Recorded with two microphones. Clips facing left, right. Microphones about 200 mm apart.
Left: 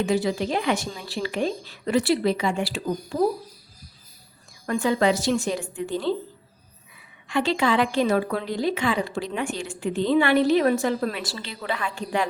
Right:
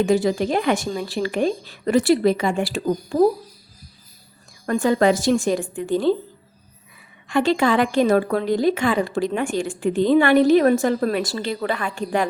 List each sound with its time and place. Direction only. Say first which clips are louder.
0.0 s a woman's voice: right 5 dB; 45° right (ahead or behind)
4.6 s a woman's voice: right 4 dB; 45° right (ahead or behind)
7.3 s a woman's voice: right 4 dB; 50° right (ahead or behind)